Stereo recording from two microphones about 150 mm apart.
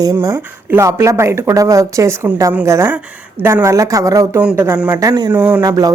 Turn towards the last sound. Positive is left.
turn(degrees=-25)  # may be behind; listen again after turning